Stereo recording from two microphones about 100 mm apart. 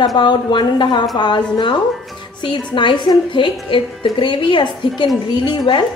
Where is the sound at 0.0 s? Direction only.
45° left (ahead or behind).